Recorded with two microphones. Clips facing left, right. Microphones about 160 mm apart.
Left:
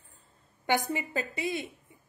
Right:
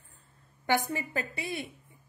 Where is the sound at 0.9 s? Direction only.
20° left (ahead or behind).